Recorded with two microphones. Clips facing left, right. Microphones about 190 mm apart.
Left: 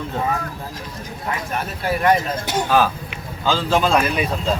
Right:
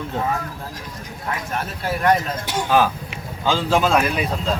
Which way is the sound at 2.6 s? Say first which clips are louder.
Right 1 dB; 15° right (ahead or behind).